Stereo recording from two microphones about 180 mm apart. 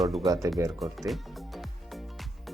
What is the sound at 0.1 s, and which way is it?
Speech, 30° right (ahead or behind).